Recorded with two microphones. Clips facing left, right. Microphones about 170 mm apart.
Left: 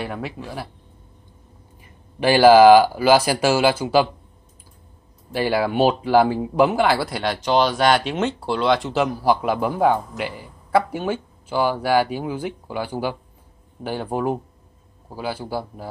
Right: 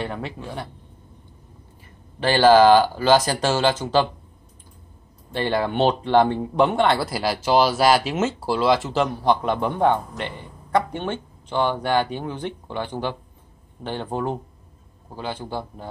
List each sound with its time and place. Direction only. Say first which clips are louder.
0.0 s speech: left 1 dB; 5° left (ahead or behind)
2.1 s speech: left 3 dB; 10° left (ahead or behind)
5.3 s speech: left 2 dB; 10° left (ahead or behind)